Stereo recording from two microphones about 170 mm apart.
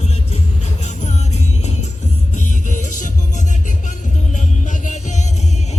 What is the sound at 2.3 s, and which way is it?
Music, 50° left (ahead or behind).